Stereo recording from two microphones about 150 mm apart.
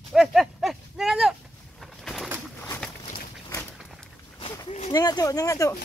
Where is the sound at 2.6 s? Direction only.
10° left (ahead or behind).